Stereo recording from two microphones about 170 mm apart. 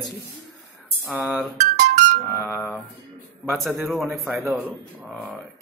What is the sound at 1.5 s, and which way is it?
Music, 45° right (ahead or behind).